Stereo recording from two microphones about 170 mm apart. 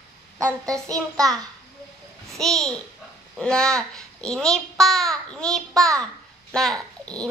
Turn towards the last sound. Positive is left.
turn(degrees=5)  # may be behind; listen again after turning